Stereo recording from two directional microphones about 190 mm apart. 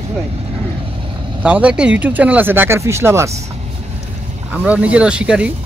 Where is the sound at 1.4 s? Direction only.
5° right (ahead or behind).